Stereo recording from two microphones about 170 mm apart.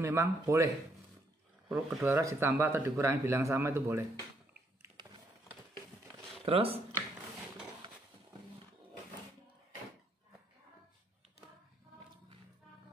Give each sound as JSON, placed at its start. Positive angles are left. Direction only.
{"t": 0.0, "sound": "speech", "side_deg": -15}
{"t": 1.7, "sound": "speech", "side_deg": 0}
{"t": 2.0, "sound": "speech", "side_deg": -15}
{"t": 6.4, "sound": "speech", "side_deg": -35}
{"t": 7.8, "sound": "a sound", "side_deg": -30}